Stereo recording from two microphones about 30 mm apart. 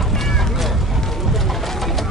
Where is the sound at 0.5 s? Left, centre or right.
Centre.